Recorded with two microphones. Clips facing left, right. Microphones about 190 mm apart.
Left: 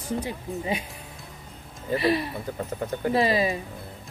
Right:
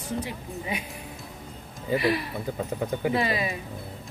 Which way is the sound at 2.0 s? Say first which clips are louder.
Left 5 dB; 25° left (ahead or behind).